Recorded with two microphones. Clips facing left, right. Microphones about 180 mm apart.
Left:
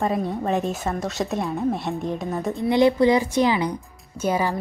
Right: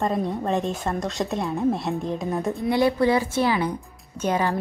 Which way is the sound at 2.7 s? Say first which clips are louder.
Left 3 dB; 20° left (ahead or behind).